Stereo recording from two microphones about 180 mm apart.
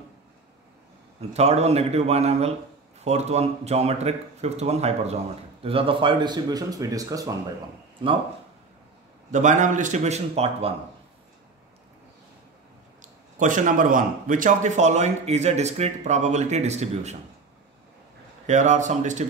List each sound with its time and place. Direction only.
1.3 s a man's voice: 35° right (ahead or behind); by 7.3 s 20° right (ahead or behind)
9.3 s a man's voice: 45° right (ahead or behind)
13.0 s a man's voice: 45° right (ahead or behind)
18.5 s a man's voice: 45° right (ahead or behind)